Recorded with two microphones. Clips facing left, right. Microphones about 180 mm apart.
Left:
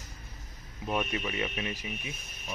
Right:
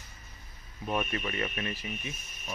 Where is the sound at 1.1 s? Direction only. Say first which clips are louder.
Left 1 dB; 10° left (ahead or behind).